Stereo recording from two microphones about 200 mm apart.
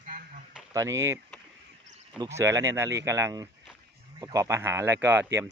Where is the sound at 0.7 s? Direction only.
15° right (ahead or behind).